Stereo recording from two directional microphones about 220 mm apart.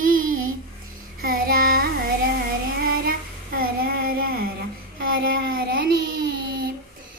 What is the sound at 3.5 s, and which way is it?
Child singing, 40° right (ahead or behind).